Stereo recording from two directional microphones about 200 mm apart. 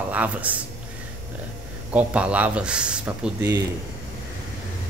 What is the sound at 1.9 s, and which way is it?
Speech, 5° right (ahead or behind).